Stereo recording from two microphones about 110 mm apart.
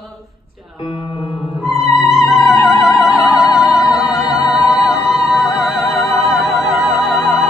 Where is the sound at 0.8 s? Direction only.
45° left (ahead or behind).